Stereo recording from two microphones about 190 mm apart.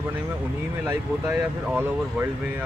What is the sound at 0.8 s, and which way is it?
Speech, 10° right (ahead or behind).